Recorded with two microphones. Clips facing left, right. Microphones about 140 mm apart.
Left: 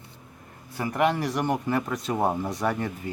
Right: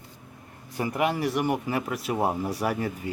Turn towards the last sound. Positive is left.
turn(degrees=-10)  # may be behind; listen again after turning